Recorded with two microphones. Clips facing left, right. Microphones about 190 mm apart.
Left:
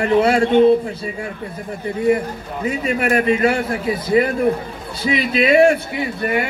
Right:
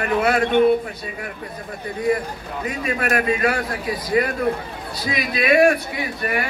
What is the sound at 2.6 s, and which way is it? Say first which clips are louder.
A man's voice: left 5 dB; 25° left (ahead or behind).